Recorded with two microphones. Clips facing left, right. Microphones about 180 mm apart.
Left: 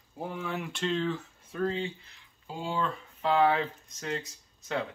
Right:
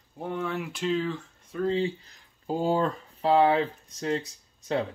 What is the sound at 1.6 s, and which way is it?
Speech, 35° right (ahead or behind).